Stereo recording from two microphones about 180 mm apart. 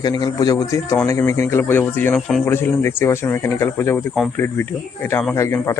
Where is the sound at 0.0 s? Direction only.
20° left (ahead or behind).